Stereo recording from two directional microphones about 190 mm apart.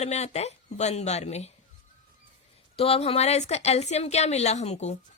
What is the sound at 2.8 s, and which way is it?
A woman's voice, 30° left (ahead or behind).